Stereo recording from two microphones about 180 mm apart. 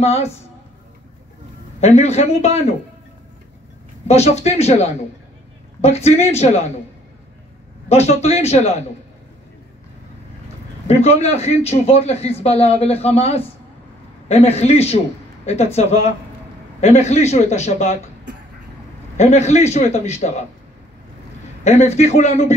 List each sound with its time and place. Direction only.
0.0 s a man's voice: 35° left (ahead or behind)
1.8 s a man's voice: 35° left (ahead or behind)
4.1 s a man's voice: 35° left (ahead or behind)
7.9 s a man's voice: 35° left (ahead or behind)
10.9 s a man's voice: 35° left (ahead or behind)
19.1 s a man's voice: 40° left (ahead or behind)
21.6 s a man's voice: 40° left (ahead or behind)